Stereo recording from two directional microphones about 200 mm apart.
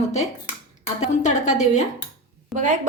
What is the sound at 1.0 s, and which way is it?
Speech, 35° left (ahead or behind).